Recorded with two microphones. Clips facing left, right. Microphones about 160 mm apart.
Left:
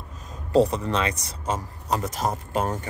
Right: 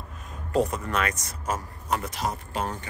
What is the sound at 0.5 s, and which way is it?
Speech, 30° left (ahead or behind).